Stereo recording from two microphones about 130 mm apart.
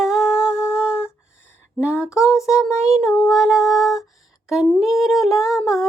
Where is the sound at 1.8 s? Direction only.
20° left (ahead or behind).